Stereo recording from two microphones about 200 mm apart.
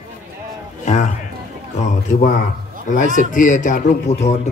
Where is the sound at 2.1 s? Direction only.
45° left (ahead or behind).